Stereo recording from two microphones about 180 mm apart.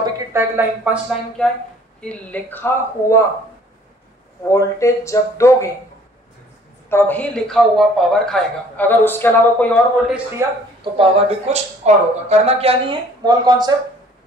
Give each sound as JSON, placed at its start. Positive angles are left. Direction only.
{"t": 0.0, "sound": "speech", "side_deg": -15}
{"t": 1.4, "sound": "a man's voice", "side_deg": 5}
{"t": 4.5, "sound": "a man's voice", "side_deg": 15}
{"t": 6.9, "sound": "a man's voice", "side_deg": 10}
{"t": 10.4, "sound": "speech", "side_deg": -15}
{"t": 10.8, "sound": "speech", "side_deg": -30}